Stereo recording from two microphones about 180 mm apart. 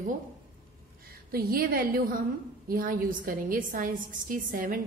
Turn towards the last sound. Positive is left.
turn(degrees=-50)  # may be behind; listen again after turning